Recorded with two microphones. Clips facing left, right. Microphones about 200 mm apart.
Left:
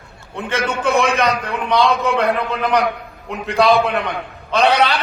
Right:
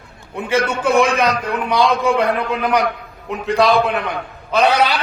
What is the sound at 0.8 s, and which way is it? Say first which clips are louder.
A man's voice: even; 5° right (ahead or behind).